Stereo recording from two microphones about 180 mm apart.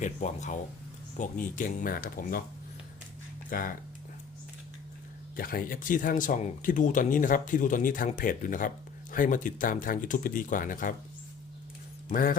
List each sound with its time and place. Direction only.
0.0 s speech: 40° left (ahead or behind)
3.5 s speech: 50° left (ahead or behind)
5.4 s speech: 55° left (ahead or behind)
12.0 s speech: 50° left (ahead or behind)